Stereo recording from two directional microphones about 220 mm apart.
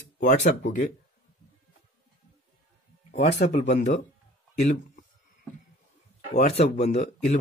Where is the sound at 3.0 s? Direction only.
30° left (ahead or behind).